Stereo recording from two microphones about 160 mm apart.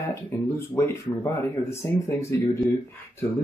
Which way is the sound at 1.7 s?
15° left (ahead or behind).